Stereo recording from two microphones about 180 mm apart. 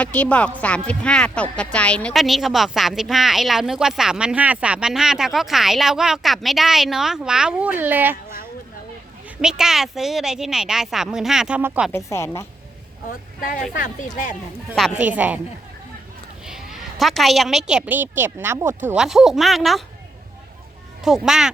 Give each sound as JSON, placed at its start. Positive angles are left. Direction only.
{"t": 0.0, "sound": "speech", "side_deg": 5}
{"t": 9.4, "sound": "speech", "side_deg": -5}
{"t": 11.9, "sound": "speech", "side_deg": 15}
{"t": 13.4, "sound": "speech", "side_deg": 50}
{"t": 14.7, "sound": "speech", "side_deg": -5}
{"t": 16.5, "sound": "a woman's voice", "side_deg": -5}
{"t": 21.0, "sound": "speech", "side_deg": 0}